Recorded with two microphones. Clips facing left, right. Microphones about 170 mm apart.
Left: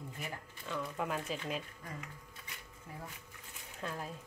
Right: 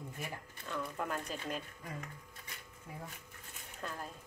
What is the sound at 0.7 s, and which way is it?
Speech, 5° left (ahead or behind).